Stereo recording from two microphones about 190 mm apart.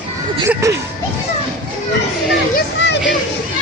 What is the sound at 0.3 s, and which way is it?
Speech, 15° right (ahead or behind).